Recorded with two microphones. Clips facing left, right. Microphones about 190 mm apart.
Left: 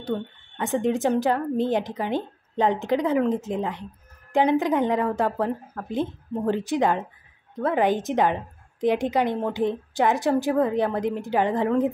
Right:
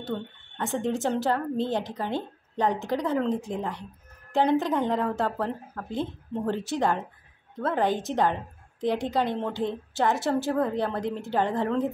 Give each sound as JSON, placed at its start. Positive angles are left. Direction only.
{"t": 0.6, "sound": "a woman's voice", "side_deg": 20}